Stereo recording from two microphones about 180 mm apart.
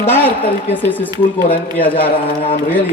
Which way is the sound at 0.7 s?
10° left (ahead or behind).